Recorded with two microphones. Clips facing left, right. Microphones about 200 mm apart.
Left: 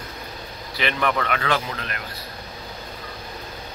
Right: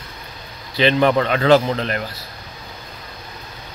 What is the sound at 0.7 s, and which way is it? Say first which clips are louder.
Speech: right 8 dB; 30° right (ahead or behind).